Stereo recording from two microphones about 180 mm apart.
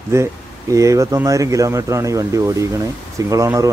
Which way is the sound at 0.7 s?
15° right (ahead or behind).